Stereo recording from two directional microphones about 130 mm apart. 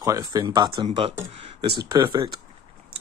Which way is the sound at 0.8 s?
50° right (ahead or behind).